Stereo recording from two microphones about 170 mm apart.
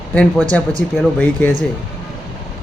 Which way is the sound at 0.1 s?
10° left (ahead or behind).